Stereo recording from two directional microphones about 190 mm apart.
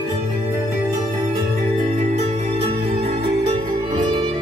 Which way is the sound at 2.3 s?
30° right (ahead or behind).